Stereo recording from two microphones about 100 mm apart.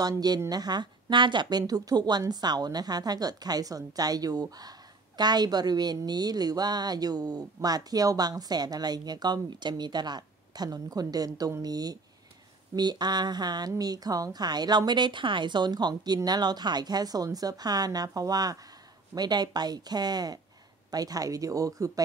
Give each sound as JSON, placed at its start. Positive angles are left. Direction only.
{"t": 0.5, "sound": "a woman's voice", "side_deg": -45}